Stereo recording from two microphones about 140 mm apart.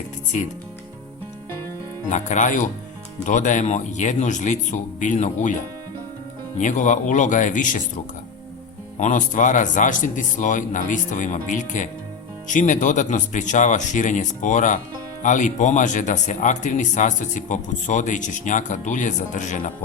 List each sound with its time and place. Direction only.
2.0 s speech: 60° left (ahead or behind)
6.6 s speech: 65° left (ahead or behind)
9.0 s speech: 60° left (ahead or behind)